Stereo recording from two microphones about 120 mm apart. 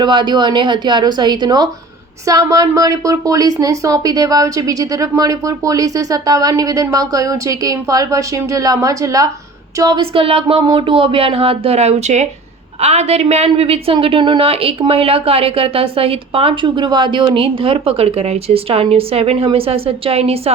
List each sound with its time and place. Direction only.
0.0 s a woman's voice: 40° right (ahead or behind)
10.0 s a woman's voice: 50° right (ahead or behind)